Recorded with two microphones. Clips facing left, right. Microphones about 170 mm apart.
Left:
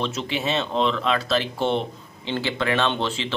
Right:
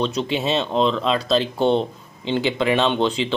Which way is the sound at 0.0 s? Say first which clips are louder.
Right 4 dB; 20° right (ahead or behind).